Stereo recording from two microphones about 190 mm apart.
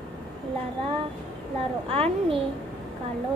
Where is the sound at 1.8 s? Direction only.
30° right (ahead or behind).